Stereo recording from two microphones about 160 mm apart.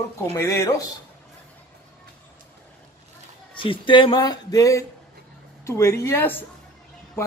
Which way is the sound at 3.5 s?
30° left (ahead or behind).